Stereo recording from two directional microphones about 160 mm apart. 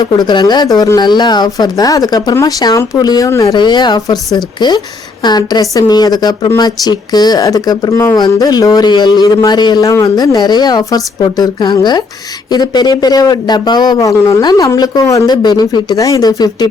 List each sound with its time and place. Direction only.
0.0 s a woman's voice: 25° left (ahead or behind)
5.2 s a woman's voice: 25° left (ahead or behind)